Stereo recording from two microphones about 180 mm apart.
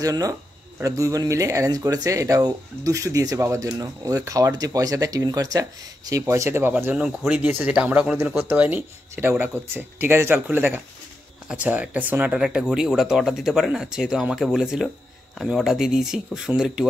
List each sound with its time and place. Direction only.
0.0 s speech: 20° right (ahead or behind); by 16.8 s 5° right (ahead or behind)